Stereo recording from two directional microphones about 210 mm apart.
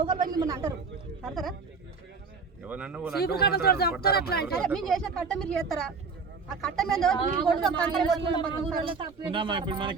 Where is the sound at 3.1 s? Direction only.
50° left (ahead or behind).